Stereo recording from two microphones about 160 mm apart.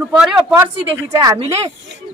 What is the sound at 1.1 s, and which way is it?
Speech, 25° right (ahead or behind).